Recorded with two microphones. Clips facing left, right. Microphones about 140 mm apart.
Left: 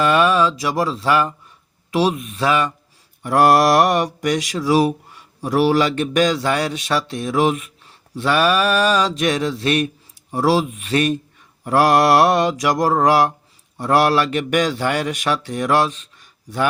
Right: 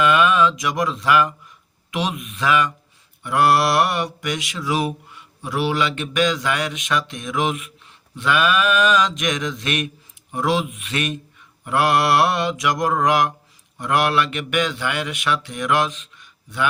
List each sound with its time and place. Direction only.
0.0 s speech: 35° left (ahead or behind)
3.2 s mantra: 40° left (ahead or behind)